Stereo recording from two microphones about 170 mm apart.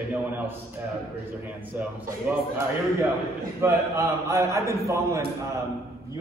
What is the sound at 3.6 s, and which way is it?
A man's voice, 15° right (ahead or behind).